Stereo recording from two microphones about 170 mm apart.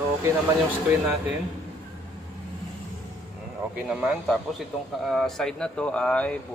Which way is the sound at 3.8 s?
5° right (ahead or behind).